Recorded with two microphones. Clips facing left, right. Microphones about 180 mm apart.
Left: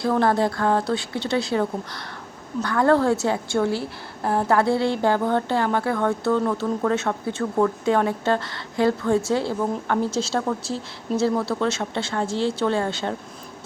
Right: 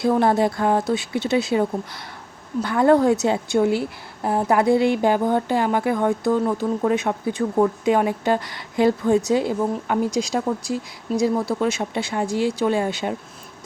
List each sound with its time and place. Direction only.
0.0 s a woman's voice: 20° right (ahead or behind)